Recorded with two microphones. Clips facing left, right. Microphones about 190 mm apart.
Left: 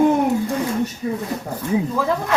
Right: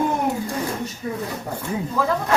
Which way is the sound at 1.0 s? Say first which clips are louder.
Left 4 dB; 25° left (ahead or behind).